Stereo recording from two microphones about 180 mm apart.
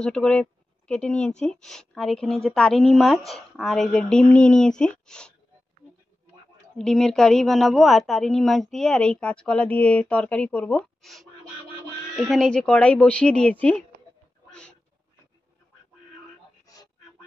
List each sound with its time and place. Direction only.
0.0 s speech: 5° left (ahead or behind)
6.8 s speech: 5° left (ahead or behind)
16.6 s a sound: 20° left (ahead or behind)